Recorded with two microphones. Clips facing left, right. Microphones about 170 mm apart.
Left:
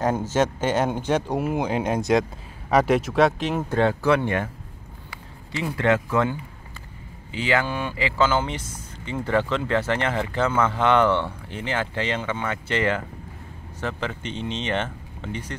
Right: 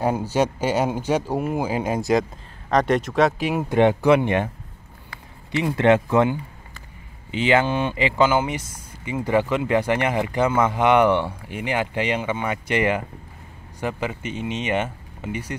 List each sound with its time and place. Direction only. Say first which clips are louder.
0.3 s speech: right 1 dB; 10° right (ahead or behind)
5.6 s speech: right 4 dB; 20° right (ahead or behind)